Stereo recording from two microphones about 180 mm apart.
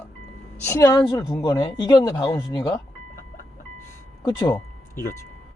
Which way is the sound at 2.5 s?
25° left (ahead or behind).